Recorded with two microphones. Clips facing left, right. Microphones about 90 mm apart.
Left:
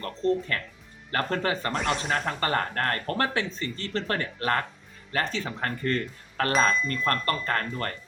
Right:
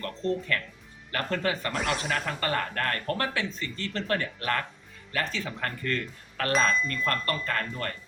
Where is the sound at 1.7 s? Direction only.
Centre (ahead or behind).